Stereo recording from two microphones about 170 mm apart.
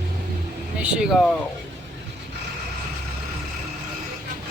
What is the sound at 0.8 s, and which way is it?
Speech, 5° right (ahead or behind).